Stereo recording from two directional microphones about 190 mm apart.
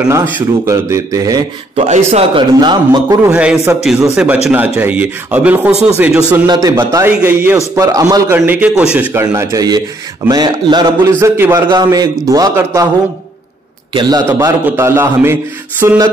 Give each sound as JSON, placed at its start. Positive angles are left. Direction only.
{"t": 0.7, "sound": "a man's voice", "side_deg": -15}
{"t": 1.9, "sound": "a man's voice", "side_deg": -35}
{"t": 3.3, "sound": "a man's voice", "side_deg": -5}
{"t": 6.4, "sound": "a man's voice", "side_deg": -20}
{"t": 13.9, "sound": "a man's voice", "side_deg": -20}